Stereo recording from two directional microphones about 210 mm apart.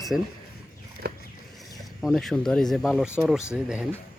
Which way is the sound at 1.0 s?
45° right (ahead or behind).